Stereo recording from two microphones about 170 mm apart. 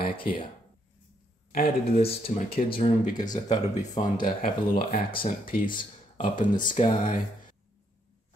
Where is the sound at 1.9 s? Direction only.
35° left (ahead or behind).